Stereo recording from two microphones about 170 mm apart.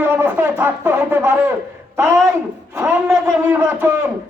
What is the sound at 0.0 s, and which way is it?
Speech, 15° right (ahead or behind).